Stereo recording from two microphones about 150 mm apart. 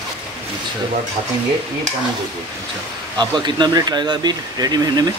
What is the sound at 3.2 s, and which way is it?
Speech, 30° right (ahead or behind).